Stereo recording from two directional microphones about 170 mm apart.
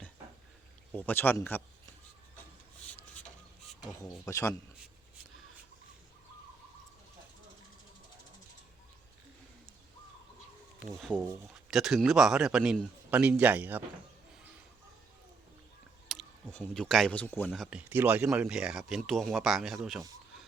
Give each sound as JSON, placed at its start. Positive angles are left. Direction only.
{"t": 0.9, "sound": "speech", "side_deg": 10}
{"t": 4.3, "sound": "speech", "side_deg": 20}
{"t": 10.9, "sound": "a man's voice", "side_deg": 5}
{"t": 16.0, "sound": "speech", "side_deg": 5}
{"t": 17.5, "sound": "a man's voice", "side_deg": -5}